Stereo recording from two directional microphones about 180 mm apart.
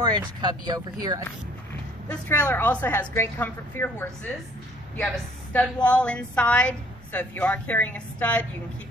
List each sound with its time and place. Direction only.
0.0 s speech: 25° right (ahead or behind)
2.0 s a woman's voice: 10° left (ahead or behind)